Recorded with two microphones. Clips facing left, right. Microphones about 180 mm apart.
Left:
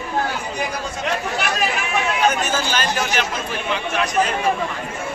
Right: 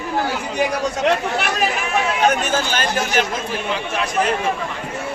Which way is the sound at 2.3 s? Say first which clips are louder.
Right 2 dB; 50° right (ahead or behind).